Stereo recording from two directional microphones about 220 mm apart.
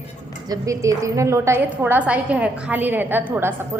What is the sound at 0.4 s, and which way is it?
A woman's voice, 15° right (ahead or behind).